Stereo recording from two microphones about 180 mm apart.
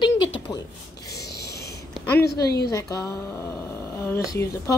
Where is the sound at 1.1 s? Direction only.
65° left (ahead or behind).